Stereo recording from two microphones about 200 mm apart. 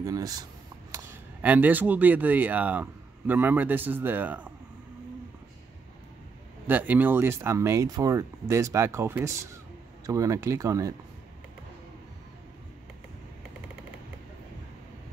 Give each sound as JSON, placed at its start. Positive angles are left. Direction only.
{"t": 0.0, "sound": "speech", "side_deg": -20}
{"t": 0.9, "sound": "speech", "side_deg": -10}
{"t": 6.7, "sound": "speech", "side_deg": -10}